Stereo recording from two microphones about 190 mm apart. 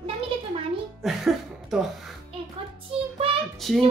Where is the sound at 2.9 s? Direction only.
30° right (ahead or behind).